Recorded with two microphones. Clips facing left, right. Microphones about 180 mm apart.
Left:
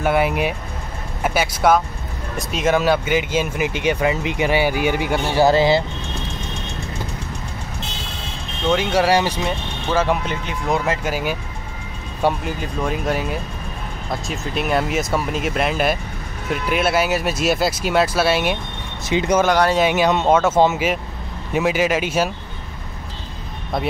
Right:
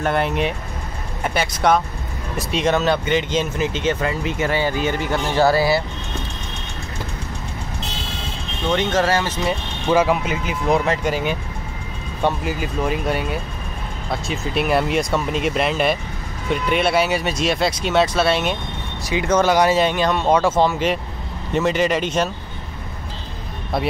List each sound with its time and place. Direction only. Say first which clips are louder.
0.0 s speech: left 2 dB; 5° left (ahead or behind)
8.6 s speech: left 2 dB; 10° left (ahead or behind)
9.8 s speech: right 3 dB; 10° right (ahead or behind)
12.4 s speech: right 1 dB; 5° right (ahead or behind)
19.0 s speech: left 2 dB; 20° left (ahead or behind)
19.4 s speech: right 1 dB; 5° right (ahead or behind)
19.8 s speech: left 2 dB; 10° left (ahead or behind)
21.5 s speech: even; 5° left (ahead or behind)